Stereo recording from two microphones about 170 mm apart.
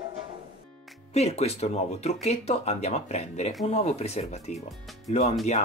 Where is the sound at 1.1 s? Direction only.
40° left (ahead or behind).